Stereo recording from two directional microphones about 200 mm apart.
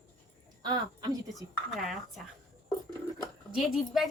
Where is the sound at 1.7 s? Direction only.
Centre (ahead or behind).